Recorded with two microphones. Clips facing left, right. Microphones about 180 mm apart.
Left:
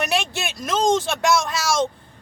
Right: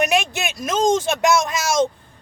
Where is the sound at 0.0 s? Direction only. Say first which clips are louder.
Right 4 dB; 15° right (ahead or behind).